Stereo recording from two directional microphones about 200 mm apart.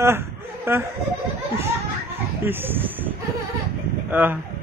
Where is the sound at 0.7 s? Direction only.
15° right (ahead or behind).